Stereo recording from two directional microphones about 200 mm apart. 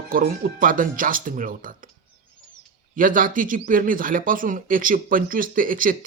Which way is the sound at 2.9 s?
45° right (ahead or behind).